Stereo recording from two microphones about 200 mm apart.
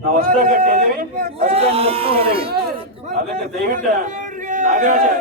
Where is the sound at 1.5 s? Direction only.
30° right (ahead or behind).